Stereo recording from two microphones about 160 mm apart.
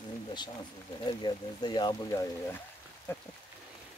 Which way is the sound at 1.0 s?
25° left (ahead or behind).